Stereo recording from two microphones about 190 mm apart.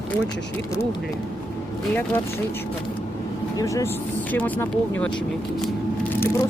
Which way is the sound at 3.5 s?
15° left (ahead or behind).